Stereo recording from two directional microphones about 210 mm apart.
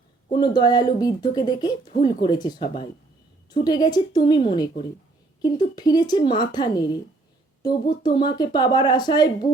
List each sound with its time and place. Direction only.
0.3 s a woman's voice: 20° left (ahead or behind)